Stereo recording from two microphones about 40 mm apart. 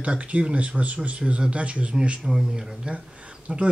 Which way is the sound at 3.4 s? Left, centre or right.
Right.